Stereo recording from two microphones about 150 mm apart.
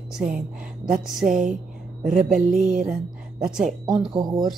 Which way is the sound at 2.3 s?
60° right (ahead or behind).